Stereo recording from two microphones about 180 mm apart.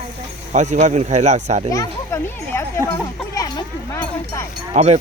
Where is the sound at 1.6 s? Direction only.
15° left (ahead or behind).